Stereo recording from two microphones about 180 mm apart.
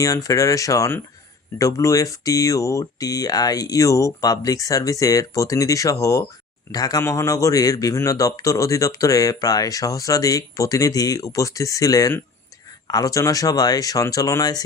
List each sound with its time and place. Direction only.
0.0 s a man's voice: 20° left (ahead or behind)